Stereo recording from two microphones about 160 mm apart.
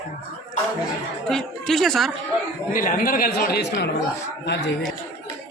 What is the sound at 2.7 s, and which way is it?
Speech, 60° left (ahead or behind).